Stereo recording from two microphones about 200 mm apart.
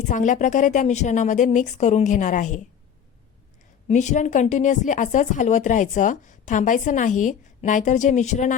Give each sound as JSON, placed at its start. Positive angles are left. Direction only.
{"t": 0.1, "sound": "speech", "side_deg": 40}
{"t": 3.8, "sound": "speech", "side_deg": 35}